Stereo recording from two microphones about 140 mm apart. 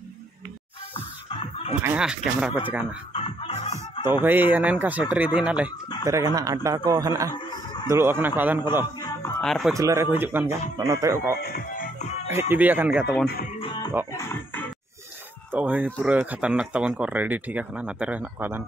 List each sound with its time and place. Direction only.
0.9 s music: 40° left (ahead or behind)
1.8 s speech: 10° right (ahead or behind)
3.1 s chicken: 40° left (ahead or behind)
4.2 s speech: 15° right (ahead or behind)
6.0 s speech: 25° right (ahead or behind)
7.3 s a sound: 35° left (ahead or behind)
7.9 s speech: 15° right (ahead or behind)
9.4 s speech: centre (ahead or behind)
9.8 s speech: 20° right (ahead or behind)
11.4 s music: 85° left
12.3 s speech: 15° right (ahead or behind)
13.6 s music: 35° left (ahead or behind)
14.1 s music: 15° left (ahead or behind)
15.5 s speech: 15° right (ahead or behind)